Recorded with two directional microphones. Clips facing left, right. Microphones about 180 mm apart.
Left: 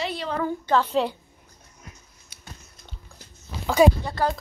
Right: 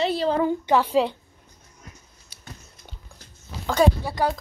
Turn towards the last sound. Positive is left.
turn(degrees=-10)  # may be behind; listen again after turning